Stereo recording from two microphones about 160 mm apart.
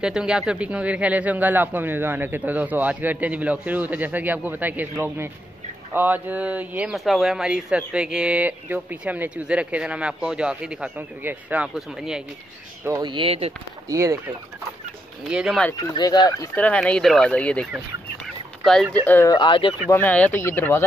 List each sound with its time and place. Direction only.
0.0 s speech: 5° right (ahead or behind)
12.8 s speech: 25° right (ahead or behind)
13.8 s speech: 20° right (ahead or behind)
15.2 s speech: 5° right (ahead or behind)
15.9 s speech: 25° left (ahead or behind)
16.5 s speech: 10° left (ahead or behind)
18.2 s fowl: centre (ahead or behind)
19.0 s speech: 15° left (ahead or behind)
19.3 s speech: 30° left (ahead or behind)
19.9 s speech: 10° left (ahead or behind)